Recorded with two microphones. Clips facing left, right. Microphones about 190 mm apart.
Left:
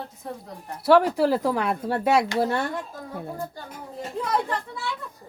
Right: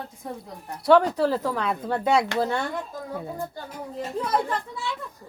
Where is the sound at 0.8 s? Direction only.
5° left (ahead or behind).